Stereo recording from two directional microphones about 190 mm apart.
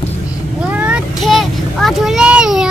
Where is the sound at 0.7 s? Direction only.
5° right (ahead or behind).